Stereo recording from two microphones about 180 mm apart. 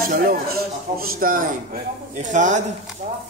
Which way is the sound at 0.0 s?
55° right (ahead or behind).